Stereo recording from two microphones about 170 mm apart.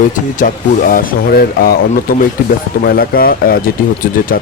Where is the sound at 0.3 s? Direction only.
55° left (ahead or behind).